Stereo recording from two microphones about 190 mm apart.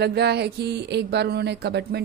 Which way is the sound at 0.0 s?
60° right (ahead or behind).